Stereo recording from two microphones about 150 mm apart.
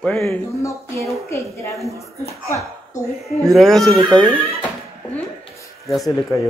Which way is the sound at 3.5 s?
Centre (ahead or behind).